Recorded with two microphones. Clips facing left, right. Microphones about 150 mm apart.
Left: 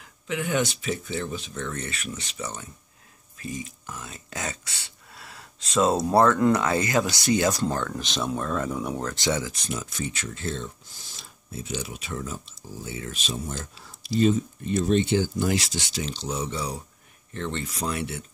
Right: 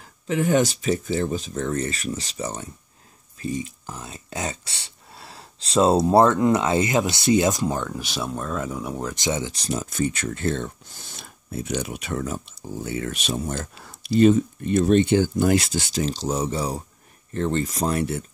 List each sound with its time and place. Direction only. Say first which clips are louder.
0.0 s speech: right 7 dB; 35° right (ahead or behind); by 9.0 s centre (ahead or behind)
9.0 s speech: right 3 dB; 20° right (ahead or behind)
9.6 s speech: right 5 dB; 35° right (ahead or behind)
9.8 s speech: right 8 dB; 50° right (ahead or behind)